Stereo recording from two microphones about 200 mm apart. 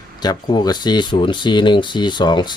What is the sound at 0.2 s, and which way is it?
Speech, 20° left (ahead or behind).